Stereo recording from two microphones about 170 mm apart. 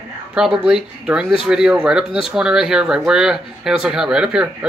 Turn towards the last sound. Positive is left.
turn(degrees=-5)  # may be behind; listen again after turning